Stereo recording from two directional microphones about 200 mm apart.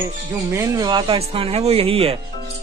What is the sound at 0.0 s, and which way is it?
Speech, 15° right (ahead or behind).